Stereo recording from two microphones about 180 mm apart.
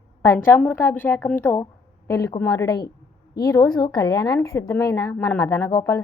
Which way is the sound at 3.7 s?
20° left (ahead or behind).